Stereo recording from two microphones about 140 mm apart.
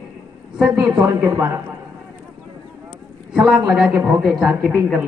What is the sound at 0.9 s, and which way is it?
Speech, 20° right (ahead or behind).